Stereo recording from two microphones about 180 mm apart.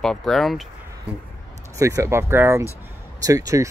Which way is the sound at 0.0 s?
Centre (ahead or behind).